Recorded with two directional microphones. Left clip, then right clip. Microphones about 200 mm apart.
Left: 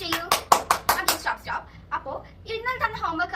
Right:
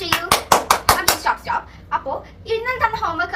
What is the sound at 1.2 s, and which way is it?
Slap, 15° left (ahead or behind).